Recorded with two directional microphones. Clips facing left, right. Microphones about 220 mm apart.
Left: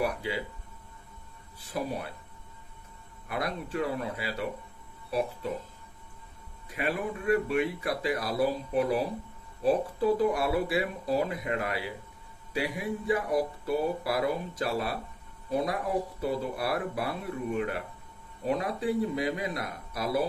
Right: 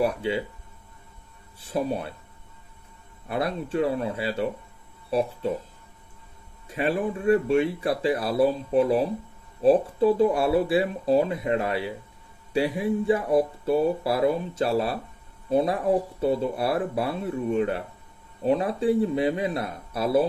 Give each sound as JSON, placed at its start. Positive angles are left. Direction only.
{"t": 0.0, "sound": "speech", "side_deg": -25}
{"t": 1.6, "sound": "speech", "side_deg": -25}
{"t": 3.2, "sound": "speech", "side_deg": -30}
{"t": 6.7, "sound": "speech", "side_deg": -30}